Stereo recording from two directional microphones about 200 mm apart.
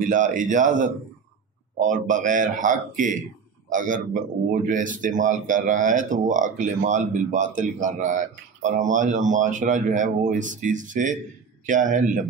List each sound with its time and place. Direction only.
0.0 s speech: 40° right (ahead or behind)